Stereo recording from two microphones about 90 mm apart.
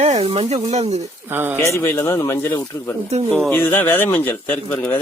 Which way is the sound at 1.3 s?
25° right (ahead or behind).